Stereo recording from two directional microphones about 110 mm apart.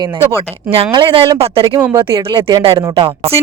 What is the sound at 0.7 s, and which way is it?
Speech, 55° right (ahead or behind).